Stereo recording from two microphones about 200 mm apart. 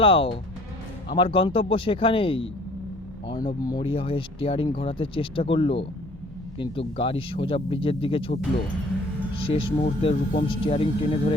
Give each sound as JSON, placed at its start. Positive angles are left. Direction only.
{"t": 0.0, "sound": "speech", "side_deg": 25}
{"t": 9.4, "sound": "speech", "side_deg": 25}